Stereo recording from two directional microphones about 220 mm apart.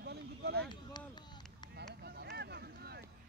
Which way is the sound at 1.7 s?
45° right (ahead or behind).